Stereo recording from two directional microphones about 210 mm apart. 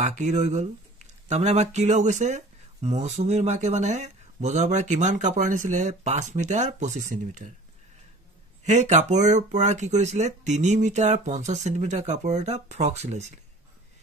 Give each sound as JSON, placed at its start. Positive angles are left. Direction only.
{"t": 0.0, "sound": "speech", "side_deg": -35}
{"t": 8.6, "sound": "speech", "side_deg": -35}